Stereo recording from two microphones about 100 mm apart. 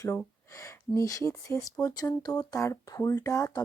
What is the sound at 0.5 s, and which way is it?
Speech, 30° left (ahead or behind).